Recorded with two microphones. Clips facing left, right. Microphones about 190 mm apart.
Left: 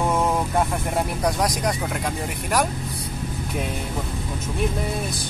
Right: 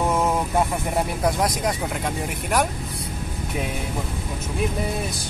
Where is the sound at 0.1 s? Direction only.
5° right (ahead or behind).